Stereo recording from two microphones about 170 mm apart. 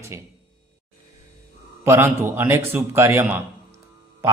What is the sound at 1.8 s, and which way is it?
A man's voice, 15° right (ahead or behind).